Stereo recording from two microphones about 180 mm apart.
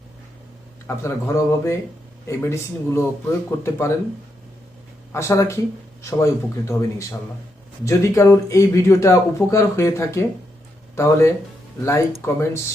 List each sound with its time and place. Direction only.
0.9 s speech: 15° left (ahead or behind)
5.1 s speech: 15° left (ahead or behind)
7.9 s speech: 15° left (ahead or behind)